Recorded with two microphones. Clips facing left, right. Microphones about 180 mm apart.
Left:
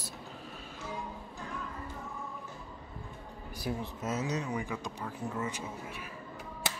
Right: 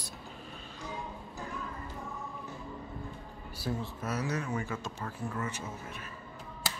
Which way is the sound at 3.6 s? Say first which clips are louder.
Even; 15° left (ahead or behind).